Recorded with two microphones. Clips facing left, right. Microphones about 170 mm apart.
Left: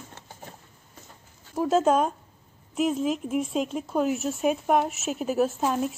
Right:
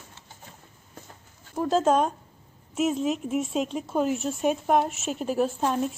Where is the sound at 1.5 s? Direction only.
Centre (ahead or behind).